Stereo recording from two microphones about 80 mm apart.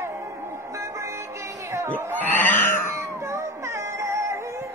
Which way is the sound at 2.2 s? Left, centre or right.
Left.